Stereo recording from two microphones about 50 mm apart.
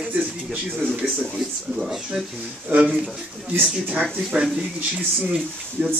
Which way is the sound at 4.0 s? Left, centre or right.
Right.